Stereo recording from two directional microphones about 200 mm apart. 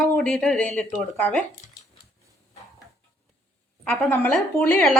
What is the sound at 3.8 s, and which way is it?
A woman's voice, 5° left (ahead or behind).